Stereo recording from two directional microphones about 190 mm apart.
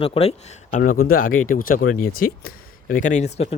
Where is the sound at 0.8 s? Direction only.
50° left (ahead or behind).